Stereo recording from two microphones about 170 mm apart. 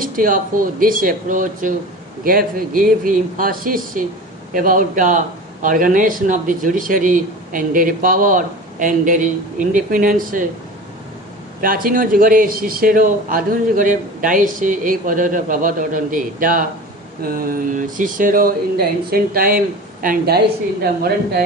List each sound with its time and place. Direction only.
0.0 s a man's voice: 55° right (ahead or behind)
11.6 s a man's voice: 55° right (ahead or behind)